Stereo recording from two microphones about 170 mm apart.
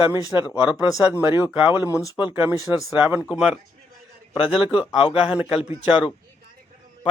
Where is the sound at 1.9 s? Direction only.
20° left (ahead or behind).